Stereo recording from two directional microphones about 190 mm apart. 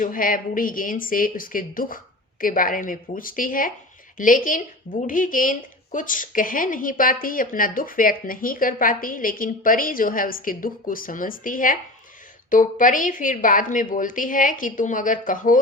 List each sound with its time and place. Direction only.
0.0 s a woman's voice: 45° left (ahead or behind)